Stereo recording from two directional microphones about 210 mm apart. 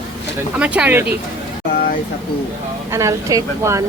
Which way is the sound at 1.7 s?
45° left (ahead or behind).